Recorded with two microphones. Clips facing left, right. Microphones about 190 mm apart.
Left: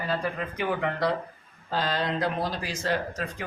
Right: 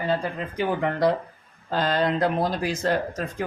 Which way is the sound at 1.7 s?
50° right (ahead or behind).